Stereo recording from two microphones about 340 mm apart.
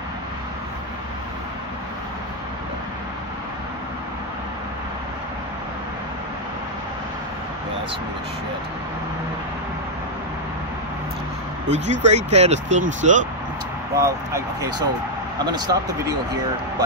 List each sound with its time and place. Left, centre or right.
11.7 s speech: centre
13.9 s speech: centre